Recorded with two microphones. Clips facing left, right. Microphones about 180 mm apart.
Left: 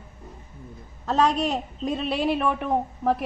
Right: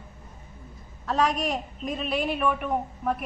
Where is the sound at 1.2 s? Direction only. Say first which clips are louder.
Left 3 dB; 30° left (ahead or behind).